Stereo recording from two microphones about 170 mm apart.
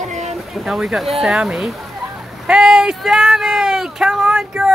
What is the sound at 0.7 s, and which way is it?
Speech, 5° right (ahead or behind).